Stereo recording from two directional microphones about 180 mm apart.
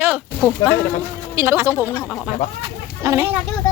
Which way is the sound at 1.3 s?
15° right (ahead or behind).